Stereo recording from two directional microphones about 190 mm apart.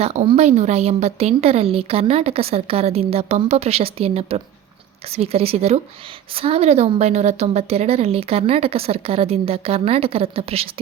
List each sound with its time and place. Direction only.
0.0 s a woman's voice: 35° right (ahead or behind)